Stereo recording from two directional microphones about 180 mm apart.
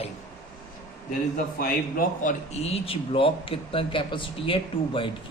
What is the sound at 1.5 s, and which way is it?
Speech, 55° left (ahead or behind).